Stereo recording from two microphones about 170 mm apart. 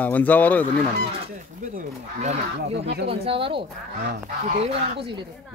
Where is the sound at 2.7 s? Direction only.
90° right.